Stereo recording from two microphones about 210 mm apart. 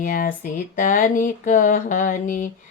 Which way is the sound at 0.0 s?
40° left (ahead or behind).